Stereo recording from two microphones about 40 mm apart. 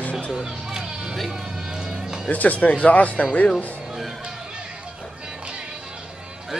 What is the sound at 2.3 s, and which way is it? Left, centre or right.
Speech, left.